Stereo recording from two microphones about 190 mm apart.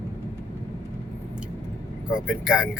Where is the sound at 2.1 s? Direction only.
5° right (ahead or behind).